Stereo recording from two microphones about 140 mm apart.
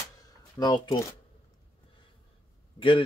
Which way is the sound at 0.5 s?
30° left (ahead or behind).